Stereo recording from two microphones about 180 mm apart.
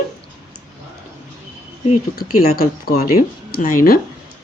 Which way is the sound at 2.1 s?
55° left (ahead or behind).